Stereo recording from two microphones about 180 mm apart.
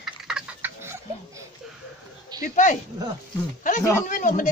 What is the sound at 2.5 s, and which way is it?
Speech, 45° left (ahead or behind).